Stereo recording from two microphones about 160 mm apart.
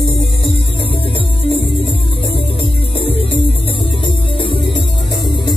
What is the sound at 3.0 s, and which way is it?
Music, 35° left (ahead or behind).